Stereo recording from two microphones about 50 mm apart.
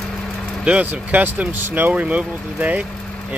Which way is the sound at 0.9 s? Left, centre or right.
Right.